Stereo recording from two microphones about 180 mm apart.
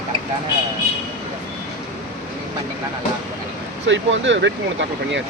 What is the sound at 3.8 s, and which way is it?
Speech, 90° right.